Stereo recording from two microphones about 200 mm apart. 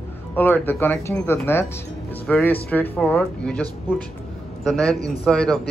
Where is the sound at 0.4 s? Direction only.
10° left (ahead or behind).